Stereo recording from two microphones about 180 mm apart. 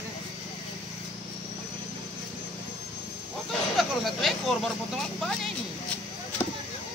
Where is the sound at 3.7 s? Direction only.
Centre (ahead or behind).